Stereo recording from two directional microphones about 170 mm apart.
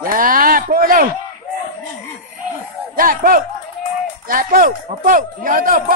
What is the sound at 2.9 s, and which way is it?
Speech, 55° right (ahead or behind).